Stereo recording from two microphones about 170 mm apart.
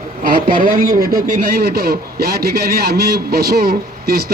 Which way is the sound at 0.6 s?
50° right (ahead or behind).